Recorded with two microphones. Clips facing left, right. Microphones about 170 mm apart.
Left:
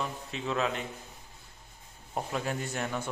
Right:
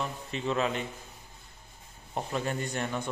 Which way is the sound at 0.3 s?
Centre (ahead or behind).